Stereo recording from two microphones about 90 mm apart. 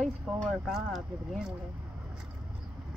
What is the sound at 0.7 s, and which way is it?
Speech, 5° right (ahead or behind).